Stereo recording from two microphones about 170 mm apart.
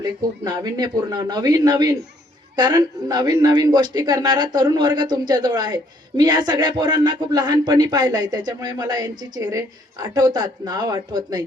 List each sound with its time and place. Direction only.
0.4 s speech: 25° right (ahead or behind)